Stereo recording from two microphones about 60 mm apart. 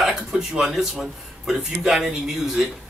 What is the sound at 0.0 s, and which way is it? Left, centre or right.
Speech, centre.